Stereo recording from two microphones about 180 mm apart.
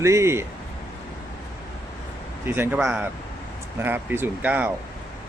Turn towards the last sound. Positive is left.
turn(degrees=-10)  # may be behind; listen again after turning